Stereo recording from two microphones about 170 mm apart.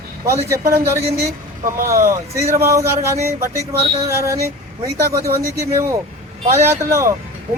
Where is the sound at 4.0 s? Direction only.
15° right (ahead or behind).